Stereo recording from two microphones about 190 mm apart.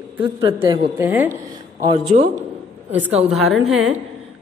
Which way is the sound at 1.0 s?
10° right (ahead or behind).